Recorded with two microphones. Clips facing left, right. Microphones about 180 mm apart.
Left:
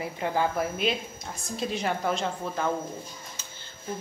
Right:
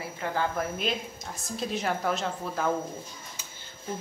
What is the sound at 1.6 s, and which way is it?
A woman's voice, centre (ahead or behind).